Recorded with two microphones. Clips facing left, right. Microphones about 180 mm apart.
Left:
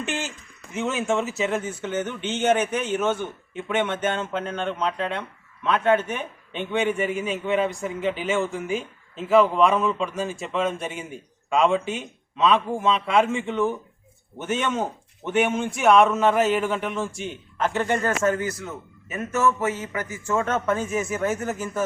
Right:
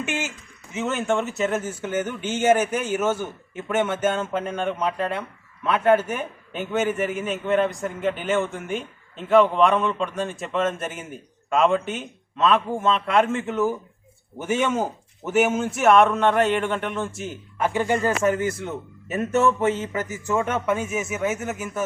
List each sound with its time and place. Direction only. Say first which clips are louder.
0.7 s a man's voice: right 1 dB; centre (ahead or behind); by 18.7 s 25° right (ahead or behind)
19.8 s a man's voice: right 3 dB; 25° right (ahead or behind); by 21.8 s 5° right (ahead or behind)